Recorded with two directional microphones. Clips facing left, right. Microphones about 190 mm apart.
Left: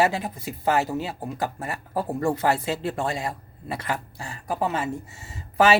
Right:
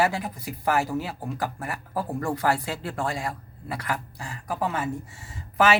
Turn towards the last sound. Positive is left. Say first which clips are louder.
# left 2 dB
turn(degrees=25)  # may be behind; listen again after turning